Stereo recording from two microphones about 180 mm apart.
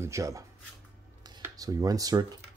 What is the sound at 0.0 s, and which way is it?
Speech, 15° right (ahead or behind).